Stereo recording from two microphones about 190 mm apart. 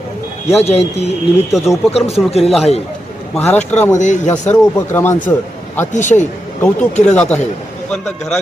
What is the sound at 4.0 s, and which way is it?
Speech, 40° left (ahead or behind).